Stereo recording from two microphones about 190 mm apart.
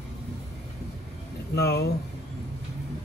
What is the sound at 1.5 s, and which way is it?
Speech, 60° left (ahead or behind).